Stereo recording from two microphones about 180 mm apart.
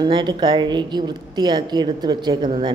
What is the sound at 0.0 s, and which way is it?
Speech, 25° right (ahead or behind).